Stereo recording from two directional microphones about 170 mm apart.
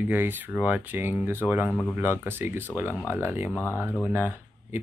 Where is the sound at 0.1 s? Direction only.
10° right (ahead or behind).